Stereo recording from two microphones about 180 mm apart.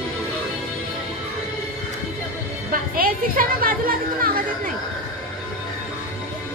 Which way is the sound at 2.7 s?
55° right (ahead or behind).